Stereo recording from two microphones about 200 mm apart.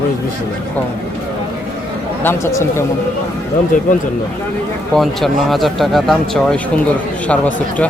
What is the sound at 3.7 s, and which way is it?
Speech, 40° left (ahead or behind).